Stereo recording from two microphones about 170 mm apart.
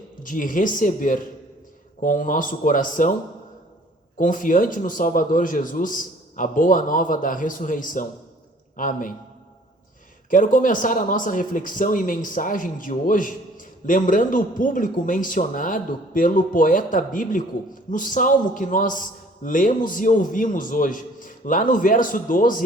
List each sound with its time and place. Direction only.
0.2 s speech: 50° left (ahead or behind)
4.2 s a man's voice: 50° left (ahead or behind)
10.2 s speech: 50° left (ahead or behind)